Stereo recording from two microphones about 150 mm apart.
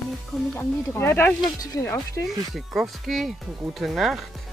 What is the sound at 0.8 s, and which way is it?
Speech, 15° left (ahead or behind).